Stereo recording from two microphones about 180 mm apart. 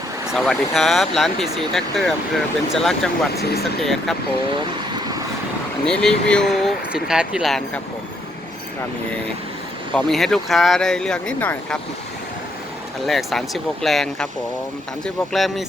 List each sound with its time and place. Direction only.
0.3 s speech: centre (ahead or behind)
4.5 s vehicle: 25° right (ahead or behind)
5.8 s speech: 5° left (ahead or behind)
9.9 s speech: centre (ahead or behind)
13.1 s speech: centre (ahead or behind)